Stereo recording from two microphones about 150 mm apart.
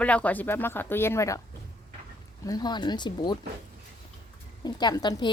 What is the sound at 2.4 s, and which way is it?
Speech, 25° left (ahead or behind).